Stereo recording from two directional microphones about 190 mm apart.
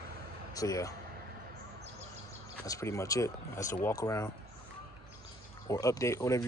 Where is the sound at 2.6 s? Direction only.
15° left (ahead or behind).